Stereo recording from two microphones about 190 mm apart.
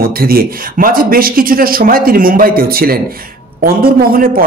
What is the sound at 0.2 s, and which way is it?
A man's voice, 50° right (ahead or behind).